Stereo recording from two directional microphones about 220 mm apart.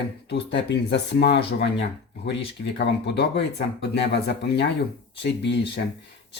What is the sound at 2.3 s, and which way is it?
Speech, 50° left (ahead or behind).